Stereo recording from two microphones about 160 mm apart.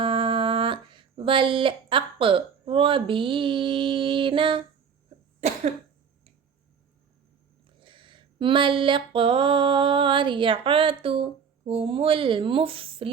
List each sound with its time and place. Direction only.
0.0 s speech: 30° right (ahead or behind)
5.4 s cough: 45° right (ahead or behind)
7.8 s a sound: 30° right (ahead or behind)